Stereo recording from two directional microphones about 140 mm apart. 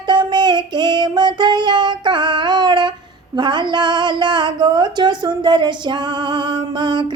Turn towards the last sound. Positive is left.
turn(degrees=-35)  # may be behind; listen again after turning